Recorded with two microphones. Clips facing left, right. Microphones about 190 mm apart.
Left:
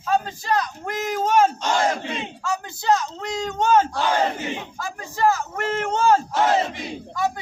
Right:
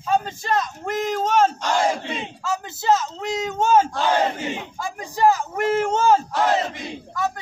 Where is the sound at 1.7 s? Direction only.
10° right (ahead or behind).